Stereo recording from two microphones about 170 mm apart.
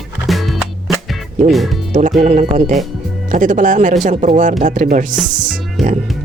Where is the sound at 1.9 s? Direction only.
45° right (ahead or behind).